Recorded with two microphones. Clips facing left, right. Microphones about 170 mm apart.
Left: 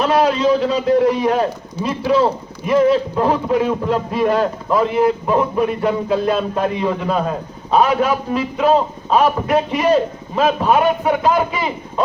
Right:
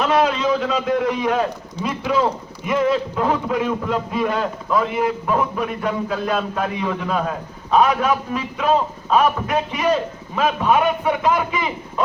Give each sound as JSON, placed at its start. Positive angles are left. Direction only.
{"t": 0.0, "sound": "a man's voice", "side_deg": 35}